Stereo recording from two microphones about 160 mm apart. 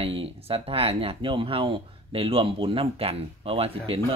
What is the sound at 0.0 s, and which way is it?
Speech, 35° right (ahead or behind).